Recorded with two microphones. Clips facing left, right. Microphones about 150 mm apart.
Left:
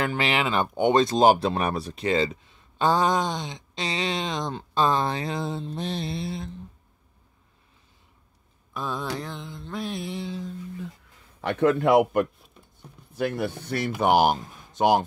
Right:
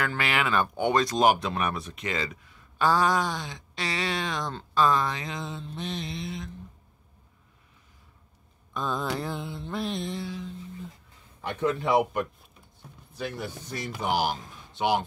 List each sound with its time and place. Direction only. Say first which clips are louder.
0.0 s speech: left 3 dB; 25° left (ahead or behind)
8.7 s a sound: right 1 dB; centre (ahead or behind)
9.1 s mantra: right 2 dB; 5° right (ahead or behind)
11.4 s speech: left 6 dB; 60° left (ahead or behind); by 15.0 s 45° left (ahead or behind)